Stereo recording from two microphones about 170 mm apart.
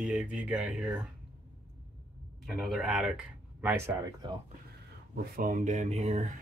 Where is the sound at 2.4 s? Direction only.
Centre (ahead or behind).